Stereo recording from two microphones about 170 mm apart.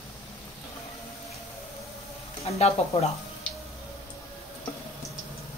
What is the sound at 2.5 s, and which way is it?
Speech, 40° left (ahead or behind).